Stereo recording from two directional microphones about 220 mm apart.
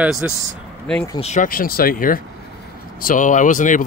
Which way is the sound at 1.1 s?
30° left (ahead or behind).